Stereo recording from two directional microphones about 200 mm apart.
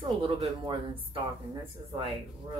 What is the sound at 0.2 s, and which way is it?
Speech, 25° right (ahead or behind).